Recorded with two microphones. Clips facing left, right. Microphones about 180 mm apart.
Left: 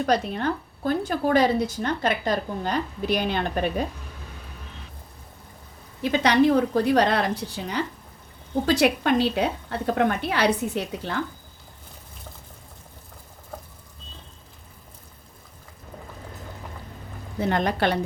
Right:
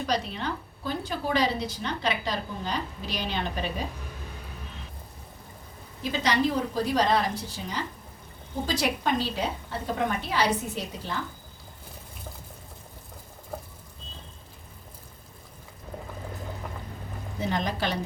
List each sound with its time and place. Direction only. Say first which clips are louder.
0.0 s a woman's voice: left 6 dB; 50° left (ahead or behind)
6.0 s a woman's voice: left 6 dB; 65° left (ahead or behind)
17.4 s a woman's voice: left 6 dB; 60° left (ahead or behind)